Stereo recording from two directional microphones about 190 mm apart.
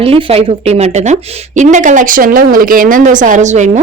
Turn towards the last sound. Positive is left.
turn(degrees=-40)  # may be behind; listen again after turning